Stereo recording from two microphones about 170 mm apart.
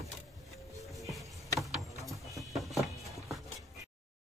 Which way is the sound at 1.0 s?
Centre (ahead or behind).